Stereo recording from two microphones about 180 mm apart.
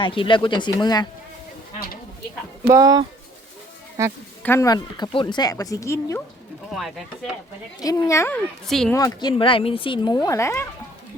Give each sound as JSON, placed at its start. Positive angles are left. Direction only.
{"t": 0.0, "sound": "speech", "side_deg": 30}
{"t": 2.6, "sound": "speech", "side_deg": -20}
{"t": 4.4, "sound": "speech", "side_deg": 15}
{"t": 6.7, "sound": "speech", "side_deg": 0}
{"t": 7.8, "sound": "speech", "side_deg": 20}
{"t": 8.6, "sound": "speech", "side_deg": 0}
{"t": 9.0, "sound": "speech", "side_deg": 20}
{"t": 9.3, "sound": "speech", "side_deg": 30}